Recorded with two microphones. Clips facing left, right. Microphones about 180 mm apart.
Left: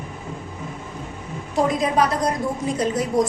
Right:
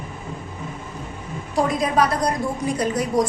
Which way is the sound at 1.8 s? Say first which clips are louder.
Even; 20° left (ahead or behind).